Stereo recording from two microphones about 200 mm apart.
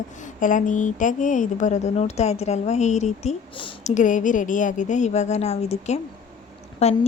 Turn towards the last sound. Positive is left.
turn(degrees=30)  # may be behind; listen again after turning